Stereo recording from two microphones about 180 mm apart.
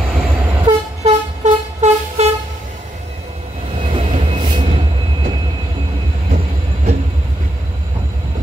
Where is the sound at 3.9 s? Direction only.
40° right (ahead or behind).